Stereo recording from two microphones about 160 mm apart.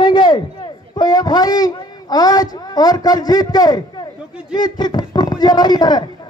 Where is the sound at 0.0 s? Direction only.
30° left (ahead or behind).